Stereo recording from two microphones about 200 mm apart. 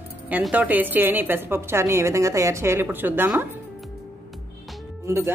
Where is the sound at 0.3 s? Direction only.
5° right (ahead or behind).